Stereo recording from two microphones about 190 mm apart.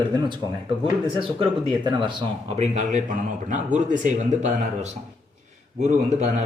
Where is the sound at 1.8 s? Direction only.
25° right (ahead or behind).